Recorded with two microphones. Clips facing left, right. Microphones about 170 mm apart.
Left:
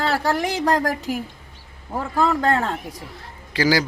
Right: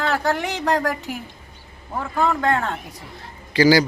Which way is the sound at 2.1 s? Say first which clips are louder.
Left 1 dB; 35° left (ahead or behind).